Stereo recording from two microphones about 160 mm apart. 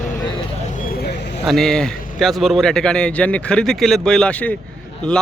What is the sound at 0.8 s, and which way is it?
Vehicle, 75° left (ahead or behind).